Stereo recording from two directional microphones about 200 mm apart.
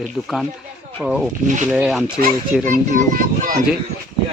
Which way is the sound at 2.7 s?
40° right (ahead or behind).